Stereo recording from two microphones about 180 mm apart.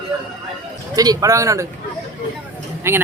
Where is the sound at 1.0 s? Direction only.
20° right (ahead or behind).